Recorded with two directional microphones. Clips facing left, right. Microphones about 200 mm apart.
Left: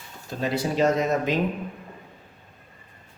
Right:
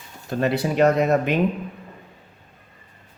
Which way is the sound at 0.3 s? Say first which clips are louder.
Right 4 dB; 60° right (ahead or behind).